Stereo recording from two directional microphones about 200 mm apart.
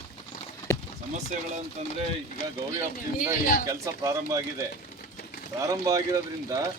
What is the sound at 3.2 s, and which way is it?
Speech, 45° left (ahead or behind).